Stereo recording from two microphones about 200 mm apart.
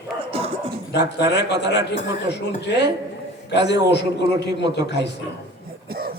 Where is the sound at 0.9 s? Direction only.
55° left (ahead or behind).